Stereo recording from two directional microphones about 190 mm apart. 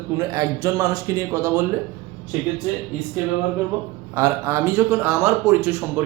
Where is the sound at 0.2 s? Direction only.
15° right (ahead or behind).